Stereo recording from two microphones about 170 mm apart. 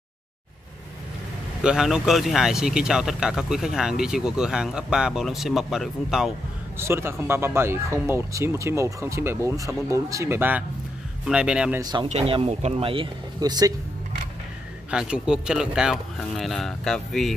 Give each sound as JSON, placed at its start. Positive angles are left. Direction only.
{"t": 1.6, "sound": "speech", "side_deg": -5}
{"t": 6.8, "sound": "speech", "side_deg": -15}
{"t": 11.8, "sound": "speech", "side_deg": -25}
{"t": 12.1, "sound": "speech", "side_deg": -35}
{"t": 14.9, "sound": "speech", "side_deg": -5}